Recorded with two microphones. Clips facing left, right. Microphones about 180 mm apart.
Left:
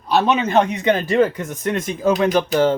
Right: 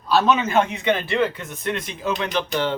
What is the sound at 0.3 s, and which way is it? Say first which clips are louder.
Speech: left 3 dB; 35° left (ahead or behind).